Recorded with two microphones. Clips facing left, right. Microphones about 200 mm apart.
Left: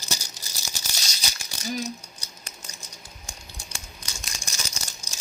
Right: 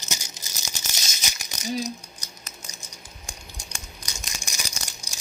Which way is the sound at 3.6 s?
15° right (ahead or behind).